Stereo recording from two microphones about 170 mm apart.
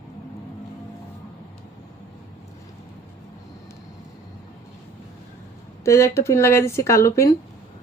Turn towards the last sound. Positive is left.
turn(degrees=15)  # may be behind; listen again after turning